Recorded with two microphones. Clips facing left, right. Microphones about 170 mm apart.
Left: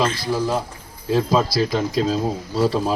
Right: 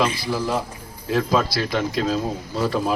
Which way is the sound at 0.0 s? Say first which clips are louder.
Even; 15° right (ahead or behind).